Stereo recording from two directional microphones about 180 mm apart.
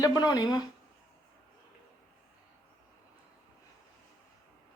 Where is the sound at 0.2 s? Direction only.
20° left (ahead or behind).